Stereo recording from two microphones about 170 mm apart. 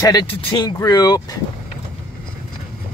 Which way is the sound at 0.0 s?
25° left (ahead or behind).